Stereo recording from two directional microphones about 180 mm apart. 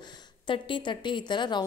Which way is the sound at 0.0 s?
25° left (ahead or behind).